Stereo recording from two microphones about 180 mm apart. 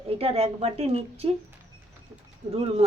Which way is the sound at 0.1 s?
35° right (ahead or behind).